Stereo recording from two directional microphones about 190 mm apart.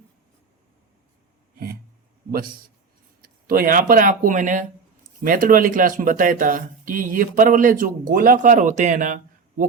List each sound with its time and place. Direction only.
2.3 s speech: 50° right (ahead or behind)